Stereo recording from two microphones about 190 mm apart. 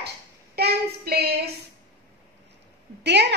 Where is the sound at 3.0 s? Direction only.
65° right (ahead or behind).